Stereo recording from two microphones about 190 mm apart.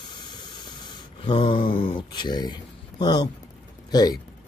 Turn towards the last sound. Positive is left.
turn(degrees=20)  # may be behind; listen again after turning